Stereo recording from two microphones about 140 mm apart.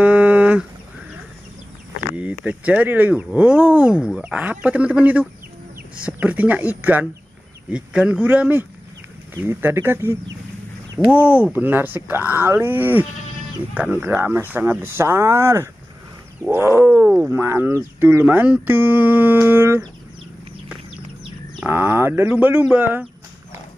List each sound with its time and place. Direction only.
0.0 s a sound: 10° right (ahead or behind)
2.1 s speech: 10° right (ahead or behind)
21.6 s speech: 15° right (ahead or behind)